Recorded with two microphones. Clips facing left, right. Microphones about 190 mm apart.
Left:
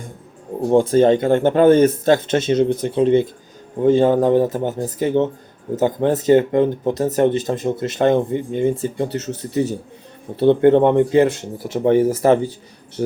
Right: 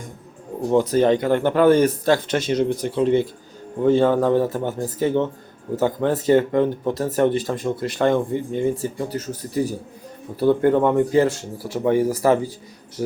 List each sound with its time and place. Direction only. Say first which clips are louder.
0.7 s speech: left 4 dB; 25° left (ahead or behind)